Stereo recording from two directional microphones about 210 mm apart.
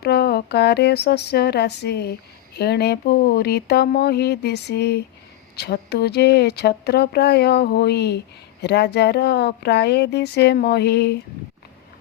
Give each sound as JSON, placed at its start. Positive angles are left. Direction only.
{"t": 0.0, "sound": "speech", "side_deg": 50}